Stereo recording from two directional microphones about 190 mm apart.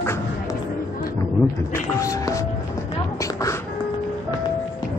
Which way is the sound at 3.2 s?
15° left (ahead or behind).